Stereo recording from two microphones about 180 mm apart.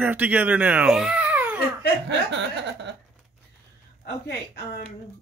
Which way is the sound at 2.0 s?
80° right.